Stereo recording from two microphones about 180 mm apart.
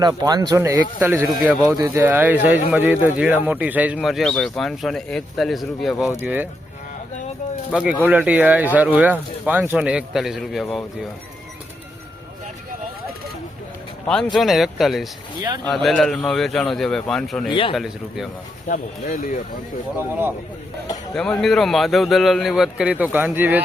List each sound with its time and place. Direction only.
0.0 s speech: 20° right (ahead or behind)
7.7 s speech: 5° right (ahead or behind)
14.3 s speech: centre (ahead or behind)
17.5 s speech: 30° left (ahead or behind)
17.7 s speech: centre (ahead or behind)
18.7 s speech: 50° left (ahead or behind)
20.0 s speech: 10° right (ahead or behind)
21.1 s speech: 5° left (ahead or behind)